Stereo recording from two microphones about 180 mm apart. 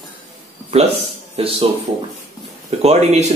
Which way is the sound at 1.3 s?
30° right (ahead or behind).